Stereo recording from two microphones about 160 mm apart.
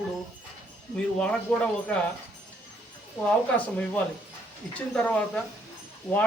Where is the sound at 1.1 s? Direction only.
5° left (ahead or behind).